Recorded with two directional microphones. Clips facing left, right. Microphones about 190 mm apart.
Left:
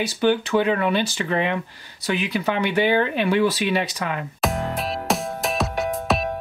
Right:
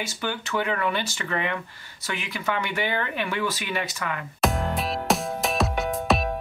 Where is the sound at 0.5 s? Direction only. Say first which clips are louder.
Left 6 dB; 25° left (ahead or behind).